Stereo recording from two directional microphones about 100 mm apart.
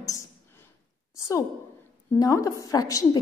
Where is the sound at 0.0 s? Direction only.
35° left (ahead or behind).